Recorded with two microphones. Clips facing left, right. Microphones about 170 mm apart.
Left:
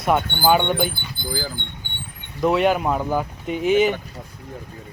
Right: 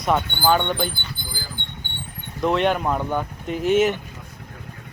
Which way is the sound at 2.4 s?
5° left (ahead or behind).